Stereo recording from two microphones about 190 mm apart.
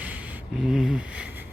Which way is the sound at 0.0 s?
10° right (ahead or behind).